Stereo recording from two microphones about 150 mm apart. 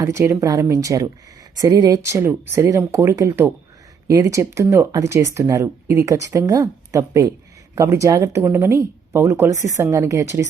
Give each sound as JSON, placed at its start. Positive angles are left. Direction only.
{"t": 0.0, "sound": "speech", "side_deg": -20}